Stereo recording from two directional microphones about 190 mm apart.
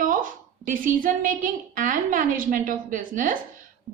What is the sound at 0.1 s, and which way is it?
A woman's voice, 45° right (ahead or behind).